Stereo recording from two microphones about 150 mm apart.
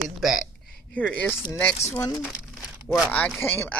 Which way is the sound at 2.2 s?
10° right (ahead or behind).